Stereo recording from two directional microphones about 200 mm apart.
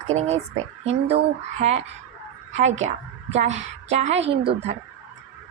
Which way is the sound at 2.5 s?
35° right (ahead or behind).